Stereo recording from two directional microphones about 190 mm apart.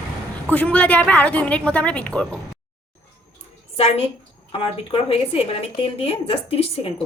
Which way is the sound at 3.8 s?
35° left (ahead or behind).